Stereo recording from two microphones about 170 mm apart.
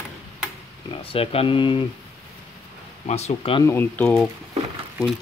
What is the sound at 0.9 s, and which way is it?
Speech, 30° left (ahead or behind).